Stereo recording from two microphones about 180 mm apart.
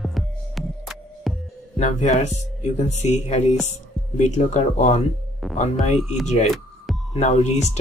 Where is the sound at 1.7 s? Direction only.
40° left (ahead or behind).